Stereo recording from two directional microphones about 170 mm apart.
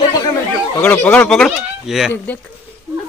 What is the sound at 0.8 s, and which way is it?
Speech, 10° left (ahead or behind).